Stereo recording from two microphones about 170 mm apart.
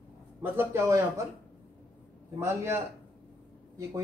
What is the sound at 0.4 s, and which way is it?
Speech, 15° right (ahead or behind).